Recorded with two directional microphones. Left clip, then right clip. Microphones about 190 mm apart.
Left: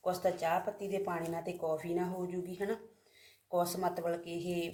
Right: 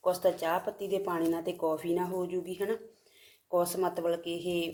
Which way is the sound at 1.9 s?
30° right (ahead or behind).